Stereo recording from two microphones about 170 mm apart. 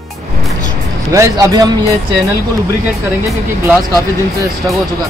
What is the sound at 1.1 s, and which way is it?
Speech, 20° right (ahead or behind).